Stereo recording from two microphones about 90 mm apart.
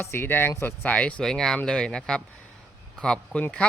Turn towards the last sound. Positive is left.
turn(degrees=10)  # may be behind; listen again after turning